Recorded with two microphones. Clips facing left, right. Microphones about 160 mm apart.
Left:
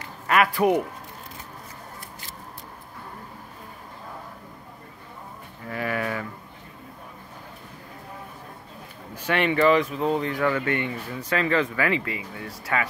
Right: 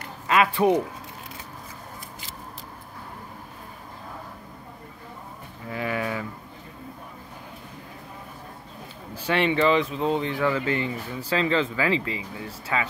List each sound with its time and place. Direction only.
0.3 s speech: 25° right (ahead or behind)
5.7 s a sound: 20° right (ahead or behind)
9.1 s speech: 30° right (ahead or behind)
12.7 s speech: 15° right (ahead or behind)